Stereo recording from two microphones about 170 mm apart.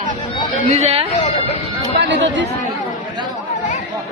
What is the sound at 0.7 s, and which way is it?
Speech, 40° right (ahead or behind).